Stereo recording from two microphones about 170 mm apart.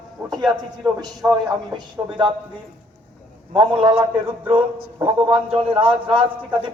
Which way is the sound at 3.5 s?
30° right (ahead or behind).